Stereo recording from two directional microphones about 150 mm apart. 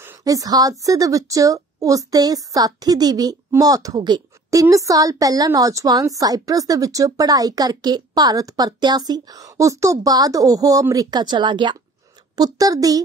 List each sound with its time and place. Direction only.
0.0 s speech: 25° right (ahead or behind)